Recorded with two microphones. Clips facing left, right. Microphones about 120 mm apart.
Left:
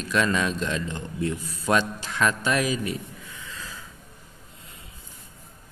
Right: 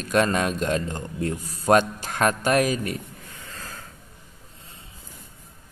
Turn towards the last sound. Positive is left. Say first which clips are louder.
# even
turn(degrees=-50)  # may be behind; listen again after turning